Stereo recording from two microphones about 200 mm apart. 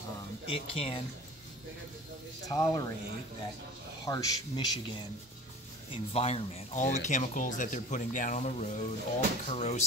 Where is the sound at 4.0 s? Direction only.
20° left (ahead or behind).